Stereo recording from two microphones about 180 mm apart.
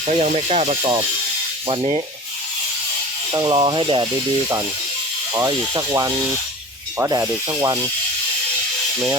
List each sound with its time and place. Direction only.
0.1 s speech: 40° right (ahead or behind)
3.3 s speech: 25° right (ahead or behind)
5.5 s speech: 20° right (ahead or behind)